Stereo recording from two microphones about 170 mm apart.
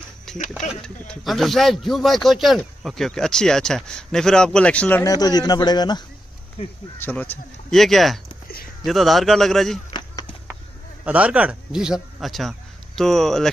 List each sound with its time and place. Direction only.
0.3 s a sound: 5° left (ahead or behind)
0.7 s speech: centre (ahead or behind)
5.1 s a man's voice: 25° left (ahead or behind)
7.0 s speech: 10° left (ahead or behind)
9.9 s chop: 25° left (ahead or behind)
11.1 s speech: 10° right (ahead or behind)